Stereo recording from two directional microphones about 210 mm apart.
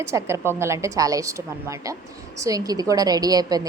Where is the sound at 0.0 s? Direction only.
10° right (ahead or behind).